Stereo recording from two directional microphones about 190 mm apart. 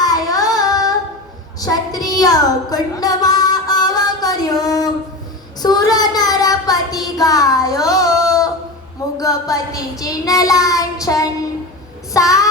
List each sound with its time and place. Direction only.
0.0 s child singing: 20° left (ahead or behind)
1.5 s a sound: 20° left (ahead or behind)
5.6 s child singing: 20° left (ahead or behind)